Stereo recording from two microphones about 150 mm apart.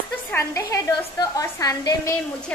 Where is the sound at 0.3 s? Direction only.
20° left (ahead or behind).